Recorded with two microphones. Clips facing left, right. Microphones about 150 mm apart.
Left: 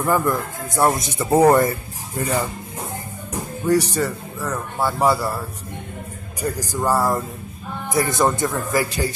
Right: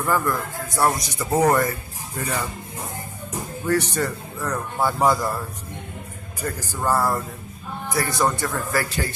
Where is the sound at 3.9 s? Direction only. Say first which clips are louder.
Left 2 dB; 5° left (ahead or behind).